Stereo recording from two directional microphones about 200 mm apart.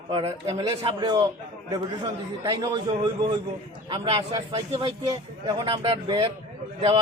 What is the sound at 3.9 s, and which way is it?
A man's voice, 25° right (ahead or behind).